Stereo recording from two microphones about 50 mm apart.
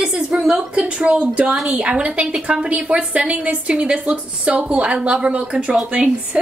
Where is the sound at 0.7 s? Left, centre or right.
Right.